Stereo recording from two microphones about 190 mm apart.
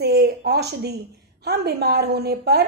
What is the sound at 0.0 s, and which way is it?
A woman's voice, 55° right (ahead or behind).